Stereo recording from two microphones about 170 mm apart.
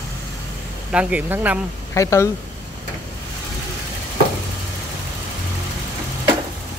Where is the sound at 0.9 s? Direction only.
10° right (ahead or behind).